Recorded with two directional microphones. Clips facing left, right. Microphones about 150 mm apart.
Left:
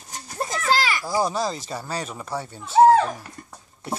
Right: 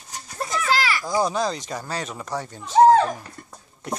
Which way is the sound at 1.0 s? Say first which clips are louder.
Right 1 dB; 5° left (ahead or behind).